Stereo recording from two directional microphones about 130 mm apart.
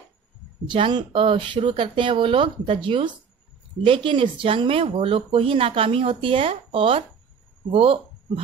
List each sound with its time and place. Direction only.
0.7 s speech: 40° right (ahead or behind)